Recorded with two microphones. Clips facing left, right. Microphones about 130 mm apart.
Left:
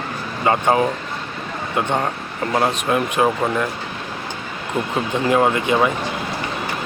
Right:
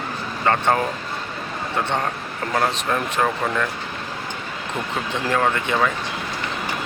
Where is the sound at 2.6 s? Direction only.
15° left (ahead or behind).